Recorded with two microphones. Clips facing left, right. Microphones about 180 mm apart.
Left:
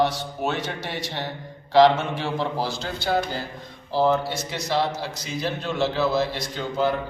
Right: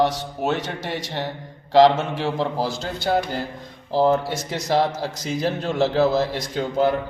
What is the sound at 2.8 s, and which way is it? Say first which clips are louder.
A man's voice: right 2 dB; 45° right (ahead or behind).